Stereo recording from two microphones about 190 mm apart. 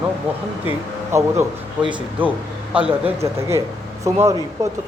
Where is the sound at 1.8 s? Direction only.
25° right (ahead or behind).